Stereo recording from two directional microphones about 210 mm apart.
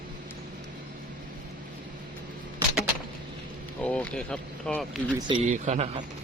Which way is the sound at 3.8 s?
5° left (ahead or behind).